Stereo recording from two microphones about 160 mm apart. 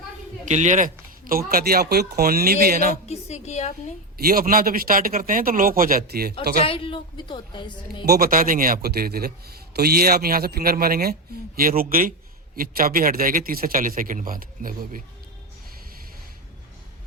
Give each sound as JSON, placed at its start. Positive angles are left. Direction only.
{"t": 0.4, "sound": "speech", "side_deg": -45}
{"t": 3.1, "sound": "a woman's voice", "side_deg": 40}
{"t": 4.2, "sound": "speech", "side_deg": -65}
{"t": 6.7, "sound": "a woman's voice", "side_deg": 35}
{"t": 8.0, "sound": "a man's voice", "side_deg": -75}